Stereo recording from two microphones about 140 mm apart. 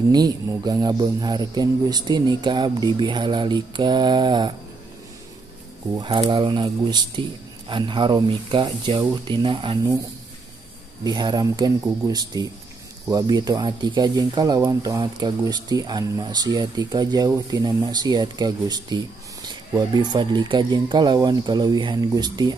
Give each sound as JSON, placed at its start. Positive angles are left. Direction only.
{"t": 0.1, "sound": "speech", "side_deg": -30}
{"t": 5.9, "sound": "speech", "side_deg": -35}
{"t": 11.1, "sound": "speech", "side_deg": -30}